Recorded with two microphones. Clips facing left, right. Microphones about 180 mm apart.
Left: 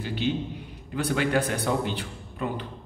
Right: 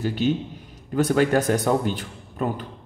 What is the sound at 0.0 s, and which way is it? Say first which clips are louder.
A man's voice: right 5 dB; 45° right (ahead or behind).